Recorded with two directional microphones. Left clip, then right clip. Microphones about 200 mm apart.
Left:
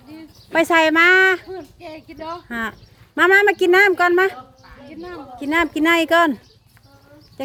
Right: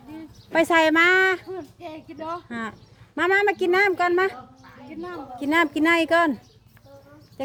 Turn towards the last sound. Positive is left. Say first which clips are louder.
# left 4 dB
turn(degrees=20)  # may be behind; listen again after turning